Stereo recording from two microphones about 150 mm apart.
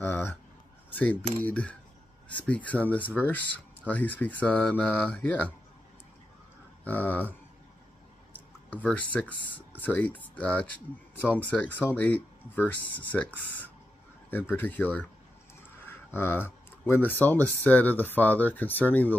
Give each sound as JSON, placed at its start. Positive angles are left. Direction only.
{"t": 0.0, "sound": "a sound", "side_deg": 15}
{"t": 0.9, "sound": "speech", "side_deg": 10}
{"t": 6.8, "sound": "speech", "side_deg": 10}
{"t": 8.7, "sound": "speech", "side_deg": 10}
{"t": 14.5, "sound": "speech", "side_deg": 10}